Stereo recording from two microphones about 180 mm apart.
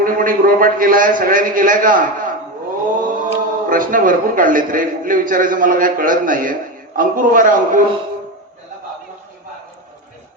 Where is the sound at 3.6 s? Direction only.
50° right (ahead or behind).